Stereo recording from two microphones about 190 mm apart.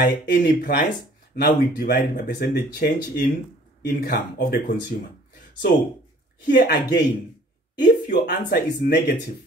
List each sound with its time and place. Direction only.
0.0 s speech: 50° left (ahead or behind)
6.5 s speech: 60° left (ahead or behind)